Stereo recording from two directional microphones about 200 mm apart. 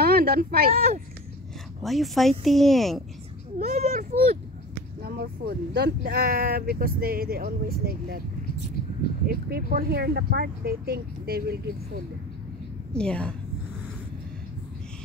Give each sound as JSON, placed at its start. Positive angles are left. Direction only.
{"t": 0.0, "sound": "speech", "side_deg": -50}
{"t": 1.8, "sound": "speech", "side_deg": 0}
{"t": 3.5, "sound": "a child's voice", "side_deg": -35}
{"t": 5.0, "sound": "speech", "side_deg": -50}
{"t": 9.3, "sound": "speech", "side_deg": -50}
{"t": 12.9, "sound": "speech", "side_deg": 5}